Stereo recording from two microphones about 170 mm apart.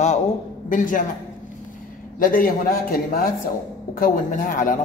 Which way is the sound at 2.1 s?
55° left (ahead or behind).